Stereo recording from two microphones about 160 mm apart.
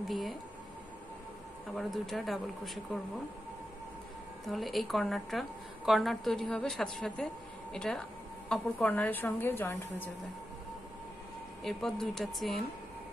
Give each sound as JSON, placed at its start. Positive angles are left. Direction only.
{"t": 0.1, "sound": "a woman's voice", "side_deg": 0}
{"t": 1.8, "sound": "a woman's voice", "side_deg": 0}
{"t": 4.5, "sound": "a woman's voice", "side_deg": 0}
{"t": 11.6, "sound": "a woman's voice", "side_deg": 0}